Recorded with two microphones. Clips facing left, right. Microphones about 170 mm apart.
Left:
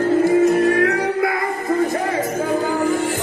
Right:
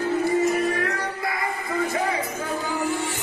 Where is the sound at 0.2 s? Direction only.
65° left (ahead or behind).